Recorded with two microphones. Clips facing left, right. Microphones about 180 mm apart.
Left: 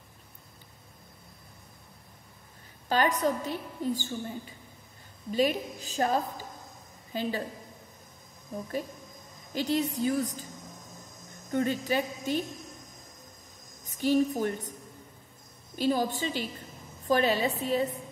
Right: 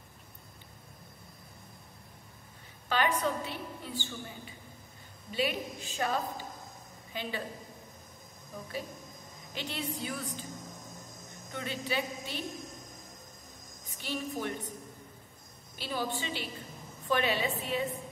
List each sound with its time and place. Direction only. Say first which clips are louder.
2.9 s a woman's voice: left 4 dB; 40° left (ahead or behind)
5.3 s a woman's voice: left 6 dB; 40° left (ahead or behind)
9.5 s a woman's voice: left 9 dB; 40° left (ahead or behind)
11.5 s a woman's voice: left 7 dB; 45° left (ahead or behind)
13.8 s a woman's voice: left 12 dB; 40° left (ahead or behind)
15.7 s a woman's voice: left 8 dB; 45° left (ahead or behind)